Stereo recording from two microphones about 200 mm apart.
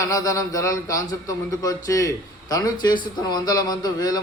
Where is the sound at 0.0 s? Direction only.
15° left (ahead or behind).